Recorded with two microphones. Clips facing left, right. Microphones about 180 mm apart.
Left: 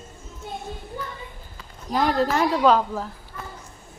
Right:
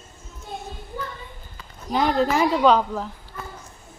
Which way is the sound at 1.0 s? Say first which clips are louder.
Right 3 dB; 20° left (ahead or behind).